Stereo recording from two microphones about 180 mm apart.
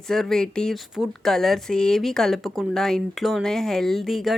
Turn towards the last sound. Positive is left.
turn(degrees=0)  # may be behind; listen again after turning